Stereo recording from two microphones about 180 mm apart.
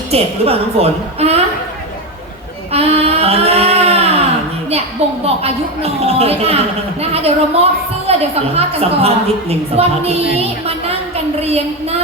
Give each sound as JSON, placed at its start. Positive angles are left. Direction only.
{"t": 0.1, "sound": "a woman's voice", "side_deg": -35}
{"t": 2.7, "sound": "a sound", "side_deg": -35}
{"t": 5.2, "sound": "a woman's voice", "side_deg": -35}
{"t": 11.4, "sound": "a woman's voice", "side_deg": -35}